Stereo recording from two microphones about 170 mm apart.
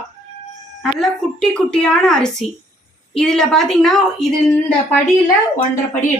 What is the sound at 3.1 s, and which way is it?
Speech, centre (ahead or behind).